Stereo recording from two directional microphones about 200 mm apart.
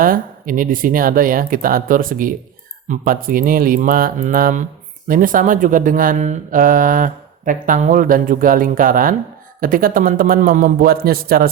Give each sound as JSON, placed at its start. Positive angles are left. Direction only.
{"t": 0.0, "sound": "speech", "side_deg": -45}